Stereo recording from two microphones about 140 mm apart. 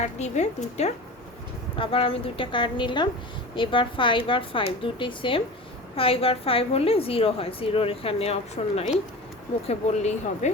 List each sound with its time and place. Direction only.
0.0 s a woman's voice: 55° left (ahead or behind)
1.8 s a woman's voice: 40° left (ahead or behind)